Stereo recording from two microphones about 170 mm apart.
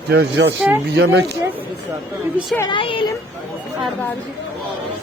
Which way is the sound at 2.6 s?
30° left (ahead or behind).